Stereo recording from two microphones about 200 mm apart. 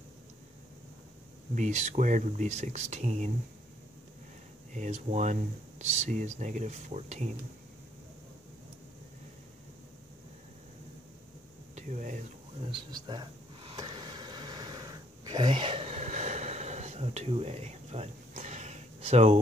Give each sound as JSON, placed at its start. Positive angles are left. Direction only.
{"t": 1.5, "sound": "speech", "side_deg": -35}
{"t": 4.7, "sound": "speech", "side_deg": -35}
{"t": 11.7, "sound": "speech", "side_deg": -40}
{"t": 12.7, "sound": "a sound", "side_deg": -20}